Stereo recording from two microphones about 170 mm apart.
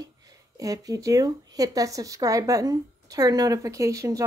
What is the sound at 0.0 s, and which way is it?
Speech, 20° right (ahead or behind).